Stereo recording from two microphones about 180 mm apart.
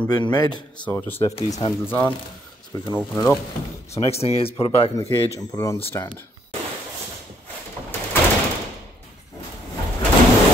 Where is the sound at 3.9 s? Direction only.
35° left (ahead or behind).